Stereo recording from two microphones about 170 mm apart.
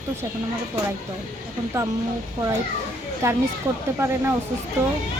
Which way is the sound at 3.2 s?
15° right (ahead or behind).